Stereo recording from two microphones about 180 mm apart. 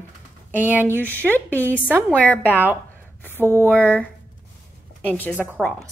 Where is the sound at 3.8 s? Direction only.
10° left (ahead or behind).